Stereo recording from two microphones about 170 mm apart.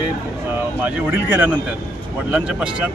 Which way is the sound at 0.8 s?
10° right (ahead or behind).